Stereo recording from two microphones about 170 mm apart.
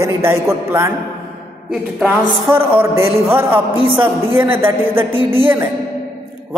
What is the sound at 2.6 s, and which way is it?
A woman's voice, 15° right (ahead or behind).